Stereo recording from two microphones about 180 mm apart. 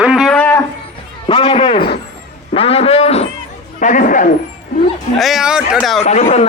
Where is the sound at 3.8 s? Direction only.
45° left (ahead or behind).